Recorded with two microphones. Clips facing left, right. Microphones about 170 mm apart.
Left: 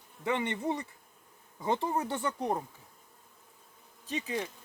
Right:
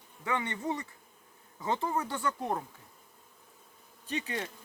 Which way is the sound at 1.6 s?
20° left (ahead or behind).